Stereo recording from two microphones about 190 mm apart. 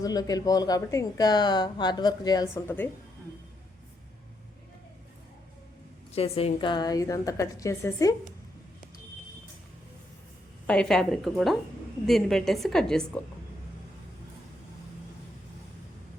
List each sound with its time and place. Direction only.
0.0 s speech: 20° left (ahead or behind)
6.1 s a woman's voice: 30° left (ahead or behind); by 8.1 s 15° left (ahead or behind)
10.7 s a woman's voice: 5° left (ahead or behind)